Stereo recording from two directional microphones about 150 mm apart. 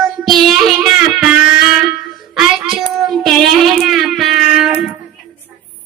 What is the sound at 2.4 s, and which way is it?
Child singing, centre (ahead or behind).